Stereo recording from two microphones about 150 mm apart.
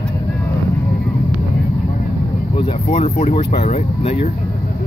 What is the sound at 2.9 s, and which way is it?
Speech, 45° left (ahead or behind).